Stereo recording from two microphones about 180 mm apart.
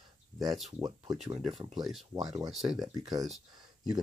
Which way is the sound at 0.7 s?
20° right (ahead or behind).